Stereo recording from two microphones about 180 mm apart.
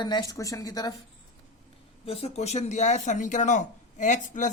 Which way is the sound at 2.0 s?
35° left (ahead or behind).